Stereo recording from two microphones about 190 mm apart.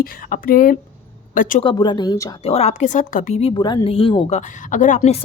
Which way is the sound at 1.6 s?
25° left (ahead or behind).